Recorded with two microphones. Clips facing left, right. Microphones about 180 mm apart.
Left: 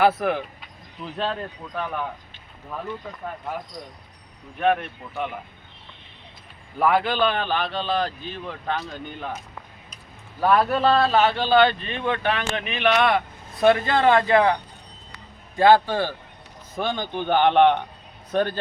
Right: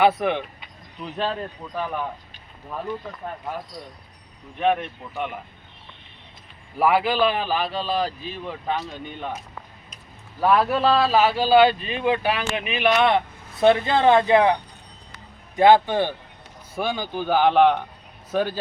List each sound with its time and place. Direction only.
0.0 s speech: centre (ahead or behind)
4.6 s speech: centre (ahead or behind)
6.7 s speech: 5° right (ahead or behind)
10.4 s speech: centre (ahead or behind)
13.1 s speech: 20° right (ahead or behind)
16.7 s speech: 10° right (ahead or behind)